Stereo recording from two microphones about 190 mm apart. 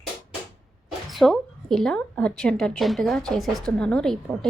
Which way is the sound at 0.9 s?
Centre (ahead or behind).